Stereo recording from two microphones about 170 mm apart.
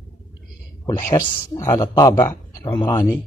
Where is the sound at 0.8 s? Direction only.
20° left (ahead or behind).